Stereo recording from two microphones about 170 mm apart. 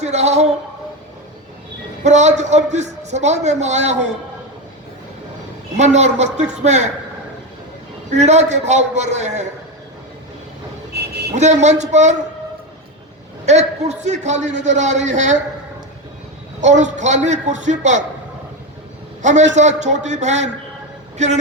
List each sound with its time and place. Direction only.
0.0 s speech: 40° right (ahead or behind)
2.0 s a man's voice: 45° right (ahead or behind)
5.7 s a man's voice: 40° right (ahead or behind)
8.1 s a man's voice: 40° right (ahead or behind)
10.9 s a sound: 75° right (ahead or behind)
11.3 s a man's voice: 40° right (ahead or behind)
13.4 s a man's voice: 40° right (ahead or behind)
16.6 s a man's voice: 45° right (ahead or behind)
19.2 s a man's voice: 45° right (ahead or behind)